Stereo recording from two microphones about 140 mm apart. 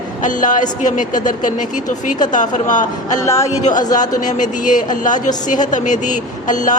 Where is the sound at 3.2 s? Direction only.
20° left (ahead or behind).